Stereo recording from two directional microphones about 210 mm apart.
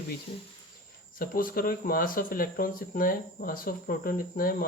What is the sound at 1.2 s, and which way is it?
Speech, 45° left (ahead or behind).